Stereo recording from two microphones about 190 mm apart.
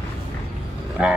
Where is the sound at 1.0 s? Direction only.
5° right (ahead or behind).